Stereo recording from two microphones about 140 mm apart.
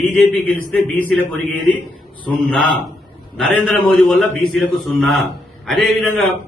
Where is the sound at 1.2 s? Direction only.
10° left (ahead or behind).